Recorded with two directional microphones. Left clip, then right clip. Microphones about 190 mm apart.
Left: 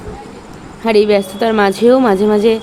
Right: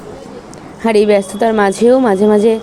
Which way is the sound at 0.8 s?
10° right (ahead or behind).